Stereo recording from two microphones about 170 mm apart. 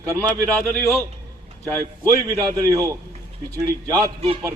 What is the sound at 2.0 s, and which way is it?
Speech, 20° right (ahead or behind).